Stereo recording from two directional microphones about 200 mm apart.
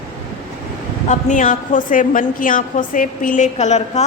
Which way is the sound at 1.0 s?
40° left (ahead or behind).